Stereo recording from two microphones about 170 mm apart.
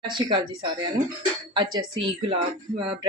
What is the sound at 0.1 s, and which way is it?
Speech, 30° right (ahead or behind).